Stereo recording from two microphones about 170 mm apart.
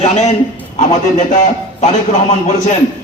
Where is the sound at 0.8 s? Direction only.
45° left (ahead or behind).